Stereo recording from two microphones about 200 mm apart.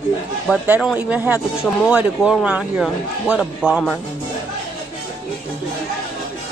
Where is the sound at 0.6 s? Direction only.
5° right (ahead or behind).